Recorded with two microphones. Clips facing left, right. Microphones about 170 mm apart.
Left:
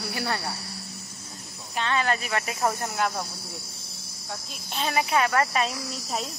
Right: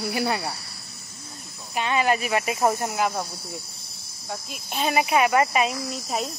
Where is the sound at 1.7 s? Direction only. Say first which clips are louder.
Right 3 dB; 15° right (ahead or behind).